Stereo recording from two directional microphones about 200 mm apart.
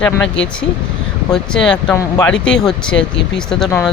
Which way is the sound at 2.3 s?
5° left (ahead or behind).